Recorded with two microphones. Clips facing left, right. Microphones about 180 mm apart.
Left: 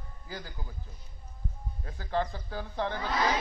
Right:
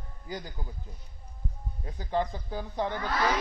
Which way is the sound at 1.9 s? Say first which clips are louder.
Right 2 dB; 15° right (ahead or behind).